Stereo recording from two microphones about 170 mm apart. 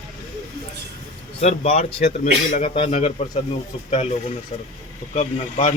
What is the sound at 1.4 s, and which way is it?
Speech, 40° left (ahead or behind).